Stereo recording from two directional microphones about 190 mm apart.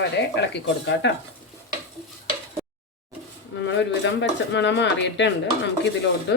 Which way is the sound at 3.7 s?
70° left (ahead or behind).